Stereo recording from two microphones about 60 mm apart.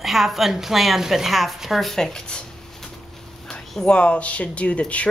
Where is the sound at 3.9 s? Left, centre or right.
Left.